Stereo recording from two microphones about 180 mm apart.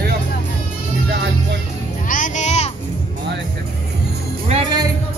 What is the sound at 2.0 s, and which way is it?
Music, 45° left (ahead or behind).